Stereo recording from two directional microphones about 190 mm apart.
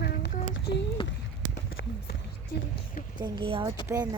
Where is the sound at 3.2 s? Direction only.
30° right (ahead or behind).